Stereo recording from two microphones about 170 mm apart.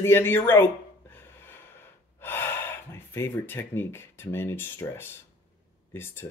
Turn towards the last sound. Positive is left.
turn(degrees=15)  # may be behind; listen again after turning